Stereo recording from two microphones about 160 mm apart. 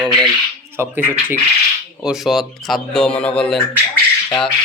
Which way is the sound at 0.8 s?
15° right (ahead or behind).